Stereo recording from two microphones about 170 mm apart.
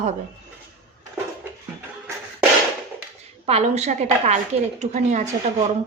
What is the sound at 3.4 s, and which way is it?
A woman's voice, 40° right (ahead or behind).